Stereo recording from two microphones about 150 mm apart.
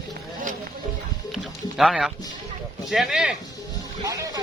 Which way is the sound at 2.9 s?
Centre (ahead or behind).